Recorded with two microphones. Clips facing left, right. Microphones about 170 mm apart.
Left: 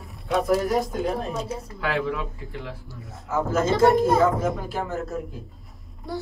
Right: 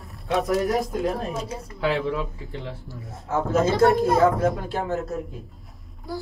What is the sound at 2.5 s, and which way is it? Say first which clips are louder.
Speech: right 1 dB; 25° right (ahead or behind).